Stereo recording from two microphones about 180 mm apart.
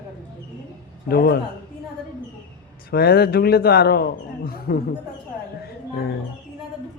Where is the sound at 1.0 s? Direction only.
60° left (ahead or behind).